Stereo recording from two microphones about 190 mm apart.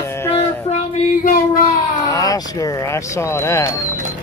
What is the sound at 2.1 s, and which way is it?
Speech, 20° left (ahead or behind).